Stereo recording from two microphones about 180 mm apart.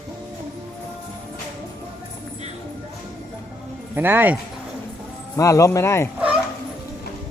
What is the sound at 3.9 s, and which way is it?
Speech, 10° right (ahead or behind).